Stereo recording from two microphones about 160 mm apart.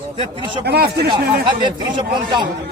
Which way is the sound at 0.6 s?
90° right.